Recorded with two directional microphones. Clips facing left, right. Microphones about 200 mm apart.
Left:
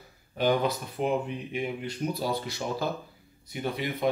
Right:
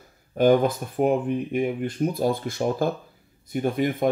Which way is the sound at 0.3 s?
50° right (ahead or behind).